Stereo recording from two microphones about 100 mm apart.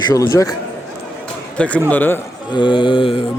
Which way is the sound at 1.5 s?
10° left (ahead or behind).